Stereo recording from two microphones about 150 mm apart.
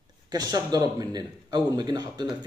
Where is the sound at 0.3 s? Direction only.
25° right (ahead or behind).